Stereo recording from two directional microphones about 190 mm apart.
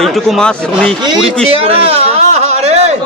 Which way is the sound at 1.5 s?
30° right (ahead or behind).